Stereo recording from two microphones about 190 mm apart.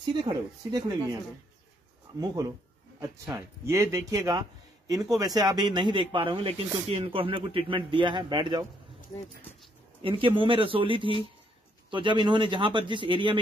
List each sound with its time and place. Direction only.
0.1 s speech: 25° right (ahead or behind)
2.1 s speech: 20° right (ahead or behind)
10.0 s speech: 25° right (ahead or behind)